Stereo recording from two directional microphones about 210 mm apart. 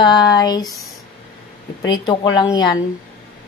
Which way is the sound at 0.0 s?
20° left (ahead or behind).